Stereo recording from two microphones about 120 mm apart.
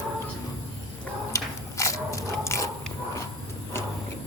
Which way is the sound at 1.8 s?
25° left (ahead or behind).